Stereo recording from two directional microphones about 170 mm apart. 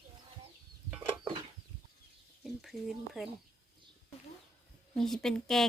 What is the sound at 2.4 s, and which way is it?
Speech, centre (ahead or behind).